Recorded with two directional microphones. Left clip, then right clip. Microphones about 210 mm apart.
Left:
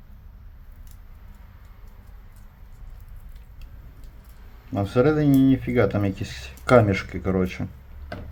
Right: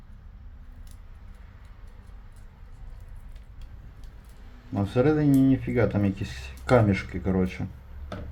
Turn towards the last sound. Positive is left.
turn(degrees=25)  # may be behind; listen again after turning